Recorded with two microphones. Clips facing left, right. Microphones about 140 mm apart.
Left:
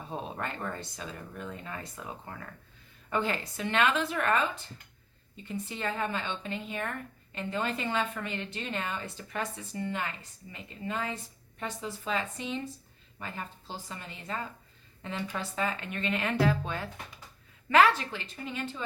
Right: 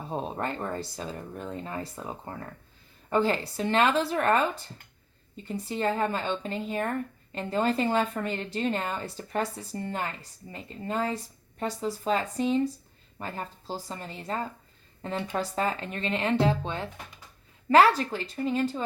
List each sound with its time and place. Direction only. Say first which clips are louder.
0.1 s a woman's voice: right 5 dB; 35° right (ahead or behind)
17.7 s a woman's voice: right 3 dB; 35° right (ahead or behind)